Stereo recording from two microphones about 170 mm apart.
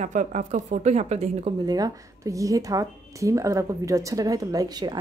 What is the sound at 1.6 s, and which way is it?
Speech, 20° right (ahead or behind).